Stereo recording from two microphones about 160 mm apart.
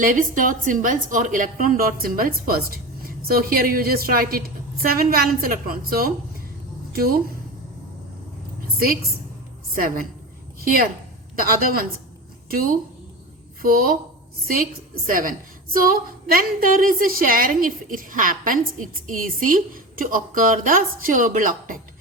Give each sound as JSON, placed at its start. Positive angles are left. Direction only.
{"t": 0.0, "sound": "a woman's voice", "side_deg": -60}
{"t": 9.7, "sound": "a woman's voice", "side_deg": -60}
{"t": 11.3, "sound": "a woman's voice", "side_deg": -65}
{"t": 15.0, "sound": "a woman's voice", "side_deg": -60}